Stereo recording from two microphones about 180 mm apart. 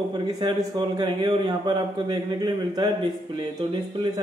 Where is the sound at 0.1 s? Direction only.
25° right (ahead or behind).